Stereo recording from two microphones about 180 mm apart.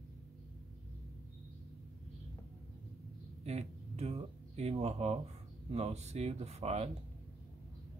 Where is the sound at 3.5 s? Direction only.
35° right (ahead or behind).